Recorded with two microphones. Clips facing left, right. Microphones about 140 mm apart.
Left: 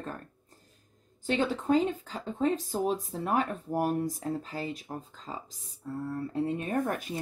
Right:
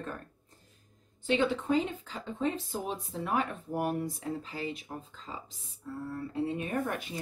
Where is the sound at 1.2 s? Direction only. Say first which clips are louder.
Left 1 dB; 40° left (ahead or behind).